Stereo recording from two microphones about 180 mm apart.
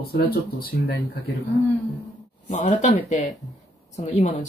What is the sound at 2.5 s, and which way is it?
Speech, 40° left (ahead or behind).